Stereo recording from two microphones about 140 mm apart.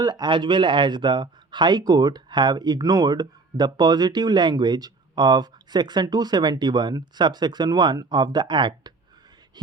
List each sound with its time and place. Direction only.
0.0 s speech: 30° right (ahead or behind)